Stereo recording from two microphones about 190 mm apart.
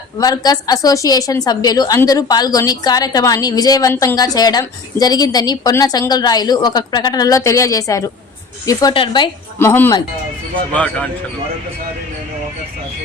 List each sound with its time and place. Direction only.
0.2 s a woman's voice: 20° left (ahead or behind)
9.6 s speech: 10° left (ahead or behind)